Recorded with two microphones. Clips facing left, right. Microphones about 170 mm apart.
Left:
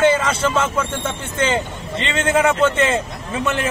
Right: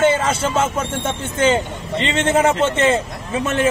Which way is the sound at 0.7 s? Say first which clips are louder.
Even; 25° right (ahead or behind).